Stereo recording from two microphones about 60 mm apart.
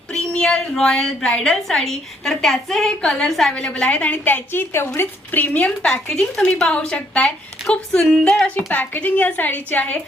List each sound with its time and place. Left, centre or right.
0.1 s a woman's voice: centre
3.8 s a woman's voice: left
4.5 s a woman's voice: left
4.9 s speech: left
5.6 s a woman's voice: centre
8.4 s a woman's voice: left